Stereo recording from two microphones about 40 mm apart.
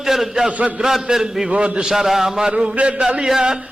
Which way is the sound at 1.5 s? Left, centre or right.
Right.